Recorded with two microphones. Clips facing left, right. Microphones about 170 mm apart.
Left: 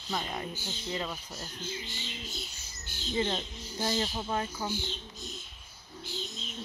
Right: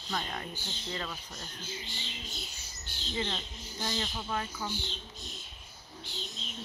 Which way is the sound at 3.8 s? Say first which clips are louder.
Left 5 dB; 30° left (ahead or behind).